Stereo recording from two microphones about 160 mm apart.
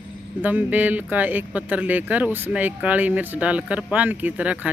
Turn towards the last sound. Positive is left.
turn(degrees=-10)  # may be behind; listen again after turning